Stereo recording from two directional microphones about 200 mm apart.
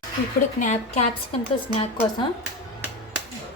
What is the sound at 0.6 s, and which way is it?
Speech, 35° left (ahead or behind).